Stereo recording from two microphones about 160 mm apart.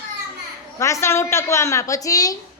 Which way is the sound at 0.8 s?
20° left (ahead or behind).